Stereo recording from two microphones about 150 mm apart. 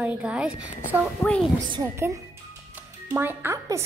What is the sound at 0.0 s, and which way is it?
Speech, 10° right (ahead or behind).